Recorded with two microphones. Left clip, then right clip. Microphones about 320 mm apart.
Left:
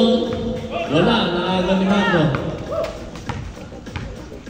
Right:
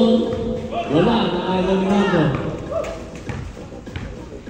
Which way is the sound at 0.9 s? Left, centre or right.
Left.